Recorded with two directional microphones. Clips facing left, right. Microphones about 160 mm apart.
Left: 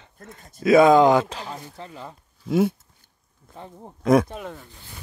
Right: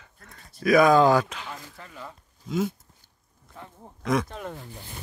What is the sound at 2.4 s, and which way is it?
Speech, 65° left (ahead or behind).